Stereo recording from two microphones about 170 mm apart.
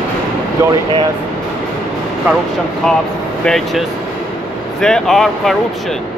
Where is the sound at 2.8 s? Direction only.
5° left (ahead or behind).